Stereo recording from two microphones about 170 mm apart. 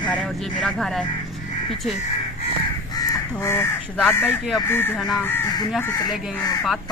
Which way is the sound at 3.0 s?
15° left (ahead or behind).